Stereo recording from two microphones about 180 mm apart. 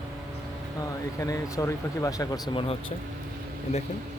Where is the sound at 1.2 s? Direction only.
20° left (ahead or behind).